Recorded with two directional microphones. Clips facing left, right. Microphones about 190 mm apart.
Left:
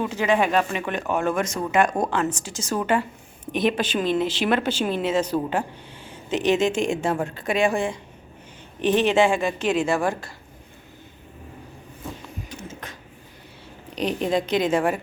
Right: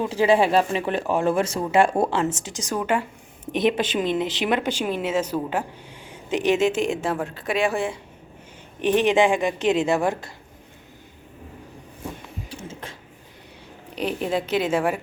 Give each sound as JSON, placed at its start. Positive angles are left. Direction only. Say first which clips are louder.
{"t": 0.0, "sound": "a woman's voice", "louder": "right 3 dB", "side_deg": -35}
{"t": 3.4, "sound": "a woman's voice", "louder": "right 1 dB", "side_deg": -25}
{"t": 12.5, "sound": "a sound", "louder": "right 1 dB", "side_deg": -30}
{"t": 13.9, "sound": "speech", "louder": "left 2 dB", "side_deg": -5}